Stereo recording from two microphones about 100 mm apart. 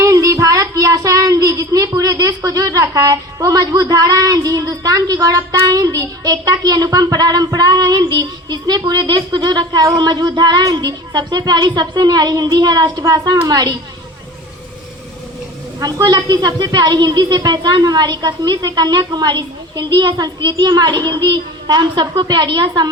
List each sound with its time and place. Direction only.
0.0 s child singing: 35° right (ahead or behind)
1.9 s a woman's voice: 35° right (ahead or behind)
15.8 s a woman's voice: 40° right (ahead or behind)